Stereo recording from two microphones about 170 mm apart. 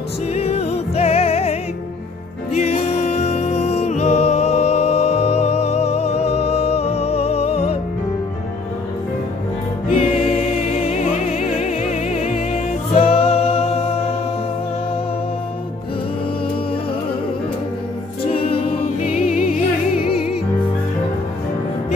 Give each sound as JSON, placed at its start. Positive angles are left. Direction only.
{"t": 0.3, "sound": "music", "side_deg": 40}
{"t": 9.8, "sound": "music", "side_deg": 35}
{"t": 19.2, "sound": "music", "side_deg": 45}